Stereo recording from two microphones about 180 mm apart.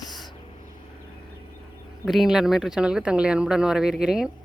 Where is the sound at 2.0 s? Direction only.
Centre (ahead or behind).